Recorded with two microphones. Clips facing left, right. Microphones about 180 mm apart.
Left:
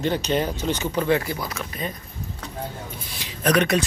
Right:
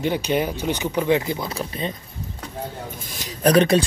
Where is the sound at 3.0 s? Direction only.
45° right (ahead or behind).